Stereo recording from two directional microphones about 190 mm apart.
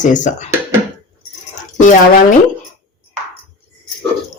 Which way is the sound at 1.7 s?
40° left (ahead or behind).